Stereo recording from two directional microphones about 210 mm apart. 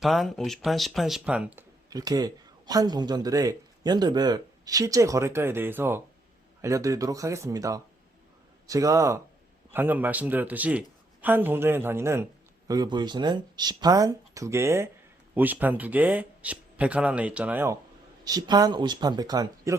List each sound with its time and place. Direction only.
0.0 s speech: centre (ahead or behind)
1.9 s speech: 15° right (ahead or behind)